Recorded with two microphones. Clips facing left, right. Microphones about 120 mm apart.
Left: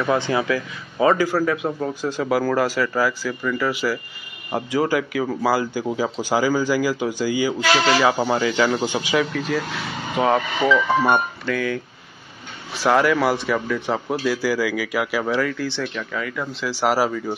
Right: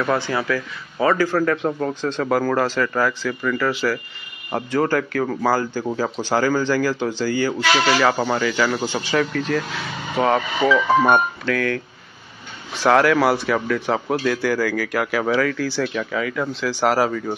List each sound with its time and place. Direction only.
0.0 s a man's voice: 15° left (ahead or behind)
10.6 s speech: 15° right (ahead or behind)
11.4 s speech: 5° left (ahead or behind)
12.8 s speech: centre (ahead or behind)